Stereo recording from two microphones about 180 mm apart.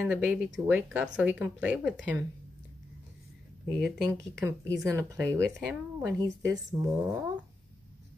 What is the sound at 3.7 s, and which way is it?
Speech, centre (ahead or behind).